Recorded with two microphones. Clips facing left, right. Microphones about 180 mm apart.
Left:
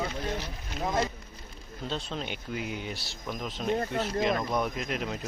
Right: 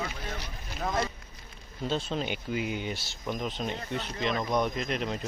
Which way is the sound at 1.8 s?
Centre (ahead or behind).